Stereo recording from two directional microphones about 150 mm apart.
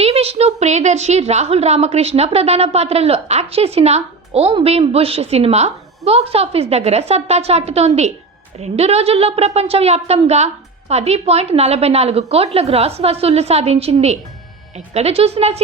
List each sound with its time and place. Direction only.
0.0 s a woman's voice: 45° right (ahead or behind)